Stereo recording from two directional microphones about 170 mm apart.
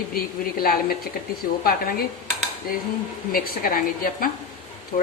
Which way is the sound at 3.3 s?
55° left (ahead or behind).